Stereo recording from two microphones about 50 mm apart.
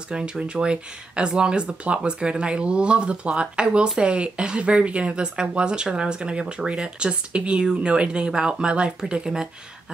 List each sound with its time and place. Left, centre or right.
0.1 s speech: centre